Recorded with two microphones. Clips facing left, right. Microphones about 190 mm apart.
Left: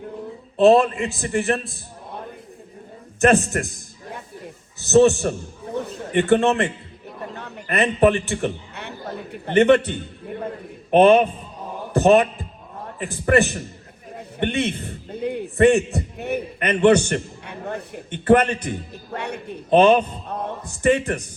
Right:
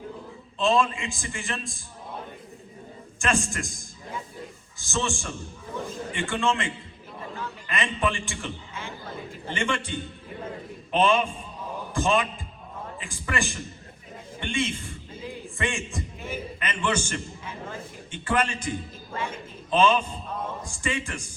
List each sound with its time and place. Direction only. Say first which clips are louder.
0.5 s a man's voice: left 9 dB; 65° left (ahead or behind)
3.2 s a sound: left 10 dB; 65° left (ahead or behind)
4.9 s a man's voice: left 16 dB; 65° left (ahead or behind)
5.8 s a sound: left 10 dB; 60° left (ahead or behind)
6.3 s a man's voice: left 9 dB; 65° left (ahead or behind)
7.2 s chatter: left 2 dB; 65° left (ahead or behind)
8.0 s a man's voice: left 14 dB; 65° left (ahead or behind)
9.1 s a sound: left 15 dB; 65° left (ahead or behind)
10.9 s a man's voice: left 9 dB; 60° left (ahead or behind)